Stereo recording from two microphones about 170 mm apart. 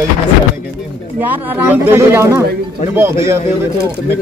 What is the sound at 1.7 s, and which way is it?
Speech, 10° right (ahead or behind).